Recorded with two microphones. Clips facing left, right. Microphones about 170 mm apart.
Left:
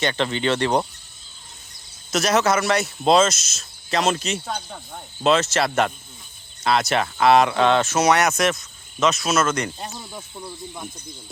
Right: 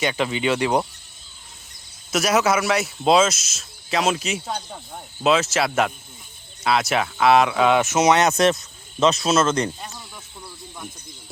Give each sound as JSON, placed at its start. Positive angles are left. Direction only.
{"t": 0.0, "sound": "speech", "side_deg": -5}
{"t": 2.0, "sound": "speech", "side_deg": -10}
{"t": 7.8, "sound": "speech", "side_deg": -20}
{"t": 8.3, "sound": "speech", "side_deg": -30}
{"t": 10.1, "sound": "speech", "side_deg": 20}